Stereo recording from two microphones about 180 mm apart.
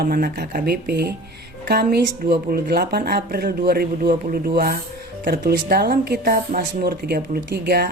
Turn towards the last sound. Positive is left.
turn(degrees=-60)  # may be behind; listen again after turning